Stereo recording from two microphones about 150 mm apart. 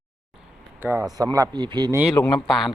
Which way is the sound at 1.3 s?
25° right (ahead or behind).